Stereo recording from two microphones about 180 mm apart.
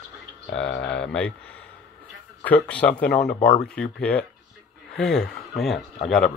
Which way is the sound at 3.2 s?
40° left (ahead or behind).